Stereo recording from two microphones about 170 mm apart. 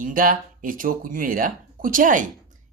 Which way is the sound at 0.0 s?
55° right (ahead or behind).